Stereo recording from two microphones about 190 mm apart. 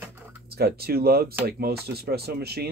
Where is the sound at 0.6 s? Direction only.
55° right (ahead or behind).